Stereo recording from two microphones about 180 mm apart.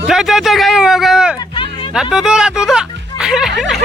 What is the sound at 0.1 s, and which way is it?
Speech, centre (ahead or behind).